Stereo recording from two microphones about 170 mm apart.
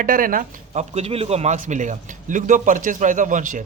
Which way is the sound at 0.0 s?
55° right (ahead or behind).